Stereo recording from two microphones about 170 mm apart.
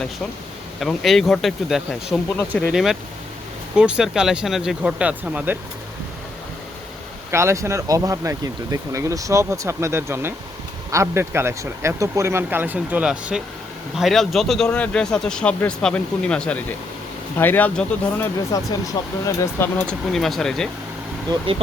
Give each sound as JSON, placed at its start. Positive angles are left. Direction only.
{"t": 0.8, "sound": "speech", "side_deg": 0}
{"t": 7.3, "sound": "speech", "side_deg": -15}
{"t": 21.3, "sound": "speech", "side_deg": -25}